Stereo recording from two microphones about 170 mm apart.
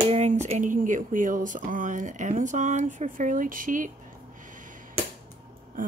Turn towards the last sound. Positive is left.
turn(degrees=-55)  # may be behind; listen again after turning